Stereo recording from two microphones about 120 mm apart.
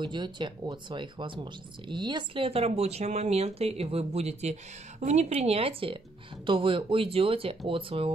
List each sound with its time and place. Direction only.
0.0 s speech: 40° right (ahead or behind)